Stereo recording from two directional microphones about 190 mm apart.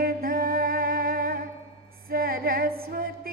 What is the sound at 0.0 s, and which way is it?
Music, 50° right (ahead or behind).